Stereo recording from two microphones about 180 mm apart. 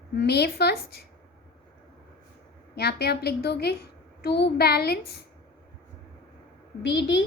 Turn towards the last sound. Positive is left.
turn(degrees=75)  # may be behind; listen again after turning